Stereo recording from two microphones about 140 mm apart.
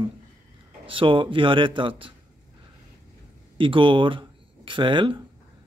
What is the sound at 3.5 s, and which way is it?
A man's voice, 35° right (ahead or behind).